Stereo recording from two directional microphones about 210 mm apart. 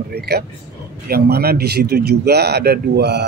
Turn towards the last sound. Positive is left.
turn(degrees=-55)  # may be behind; listen again after turning